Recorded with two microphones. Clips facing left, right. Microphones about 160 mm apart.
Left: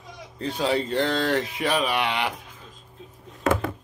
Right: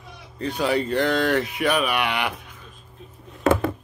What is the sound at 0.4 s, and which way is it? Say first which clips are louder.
Speech: right 2 dB; 30° left (ahead or behind).